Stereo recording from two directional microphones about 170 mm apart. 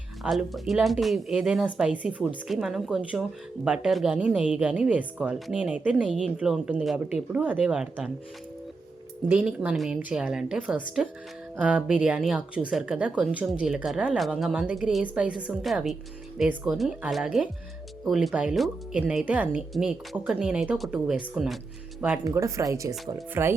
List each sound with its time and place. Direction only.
0.2 s speech: centre (ahead or behind)
9.3 s speech: 5° right (ahead or behind)
22.2 s speech: 20° right (ahead or behind)